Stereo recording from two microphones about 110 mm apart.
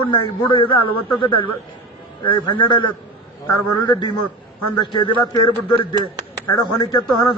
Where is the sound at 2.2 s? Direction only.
45° left (ahead or behind).